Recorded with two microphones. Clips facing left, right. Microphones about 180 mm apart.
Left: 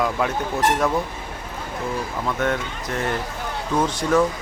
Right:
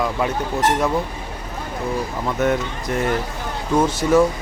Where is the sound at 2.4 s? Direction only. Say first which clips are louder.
Right 4 dB; 5° right (ahead or behind).